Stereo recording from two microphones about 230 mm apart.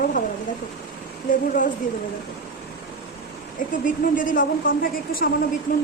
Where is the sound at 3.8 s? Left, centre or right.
Left.